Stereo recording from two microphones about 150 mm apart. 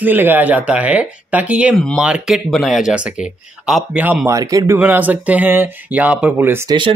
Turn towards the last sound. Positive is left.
turn(degrees=-30)  # may be behind; listen again after turning